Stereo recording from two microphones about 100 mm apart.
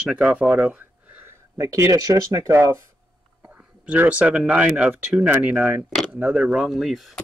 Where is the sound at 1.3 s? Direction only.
30° right (ahead or behind).